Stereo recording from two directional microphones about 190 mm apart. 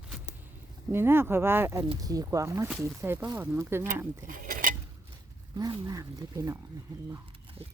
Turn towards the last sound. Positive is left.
turn(degrees=-15)  # may be behind; listen again after turning